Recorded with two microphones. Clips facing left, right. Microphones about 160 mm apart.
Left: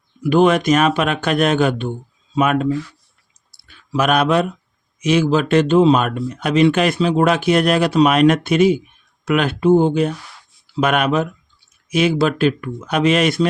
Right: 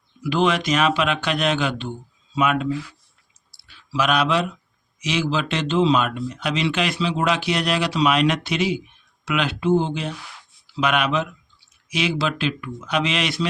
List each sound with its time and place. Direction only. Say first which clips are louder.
0.2 s speech: left 7 dB; 50° left (ahead or behind)
3.5 s a sound: left 5 dB; 50° left (ahead or behind)
4.9 s speech: left 8 dB; 50° left (ahead or behind)